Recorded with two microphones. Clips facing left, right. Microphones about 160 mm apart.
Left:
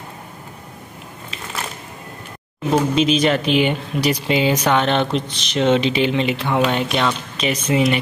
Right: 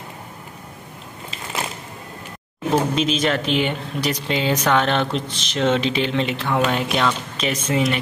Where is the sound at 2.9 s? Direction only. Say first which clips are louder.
Left 4 dB; centre (ahead or behind).